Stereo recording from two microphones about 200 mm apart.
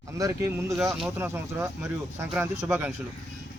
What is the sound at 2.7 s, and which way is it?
Speech, 5° right (ahead or behind).